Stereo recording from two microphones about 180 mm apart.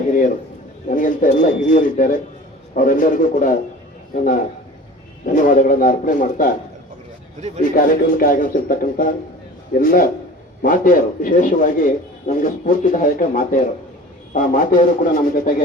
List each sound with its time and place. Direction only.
0.9 s speech: 45° left (ahead or behind)
7.6 s speech: 50° left (ahead or behind)